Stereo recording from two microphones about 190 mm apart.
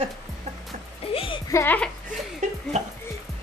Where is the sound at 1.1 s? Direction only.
30° left (ahead or behind).